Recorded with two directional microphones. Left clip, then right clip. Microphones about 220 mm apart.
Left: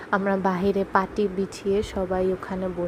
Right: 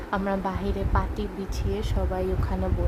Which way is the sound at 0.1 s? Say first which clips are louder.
Left 5 dB; 15° left (ahead or behind).